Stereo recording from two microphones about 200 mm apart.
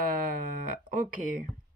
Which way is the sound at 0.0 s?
45° right (ahead or behind).